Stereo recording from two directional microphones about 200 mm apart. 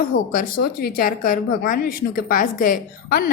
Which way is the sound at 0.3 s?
45° left (ahead or behind).